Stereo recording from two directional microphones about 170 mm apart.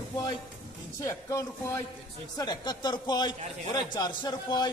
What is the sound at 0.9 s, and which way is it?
A man's voice, 20° left (ahead or behind).